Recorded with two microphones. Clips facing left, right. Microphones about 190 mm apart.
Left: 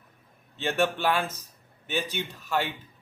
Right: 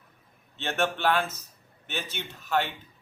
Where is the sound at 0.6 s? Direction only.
10° left (ahead or behind).